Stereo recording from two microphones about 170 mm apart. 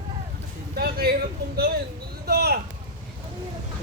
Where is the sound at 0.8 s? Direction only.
65° right (ahead or behind).